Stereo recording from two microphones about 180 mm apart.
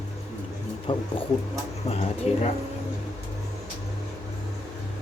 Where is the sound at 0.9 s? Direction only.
30° left (ahead or behind).